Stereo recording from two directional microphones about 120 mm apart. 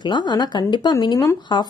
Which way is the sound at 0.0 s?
40° left (ahead or behind).